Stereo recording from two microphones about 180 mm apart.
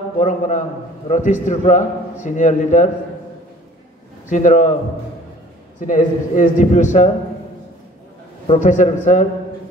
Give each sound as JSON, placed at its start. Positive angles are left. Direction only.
{"t": 0.2, "sound": "a man's voice", "side_deg": 45}
{"t": 4.3, "sound": "a man's voice", "side_deg": 45}
{"t": 5.8, "sound": "a man's voice", "side_deg": 45}
{"t": 8.5, "sound": "a man's voice", "side_deg": 45}